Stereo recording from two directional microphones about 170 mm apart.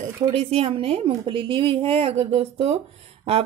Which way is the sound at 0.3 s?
35° right (ahead or behind).